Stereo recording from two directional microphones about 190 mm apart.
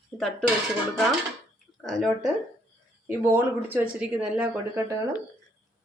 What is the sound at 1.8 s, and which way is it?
Speech, centre (ahead or behind).